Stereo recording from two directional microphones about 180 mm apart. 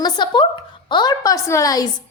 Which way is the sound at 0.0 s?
25° left (ahead or behind).